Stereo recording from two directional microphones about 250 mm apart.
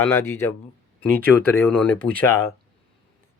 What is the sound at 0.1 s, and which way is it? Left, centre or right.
Speech, centre.